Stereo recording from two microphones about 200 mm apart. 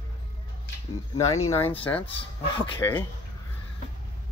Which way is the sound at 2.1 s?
25° left (ahead or behind).